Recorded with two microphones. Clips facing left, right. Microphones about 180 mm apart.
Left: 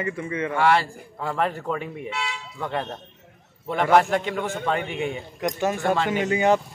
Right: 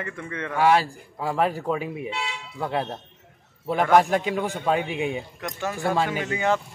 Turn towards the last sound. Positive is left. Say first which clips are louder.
# left 4 dB
turn(degrees=15)  # may be behind; listen again after turning